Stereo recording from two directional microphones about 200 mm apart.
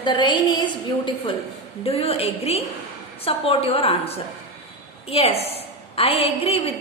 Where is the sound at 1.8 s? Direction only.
30° left (ahead or behind).